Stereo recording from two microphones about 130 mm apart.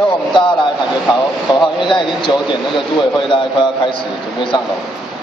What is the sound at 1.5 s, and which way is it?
Speech, 40° left (ahead or behind).